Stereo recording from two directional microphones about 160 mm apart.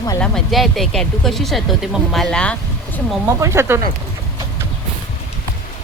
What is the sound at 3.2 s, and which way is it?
Speech, 15° right (ahead or behind).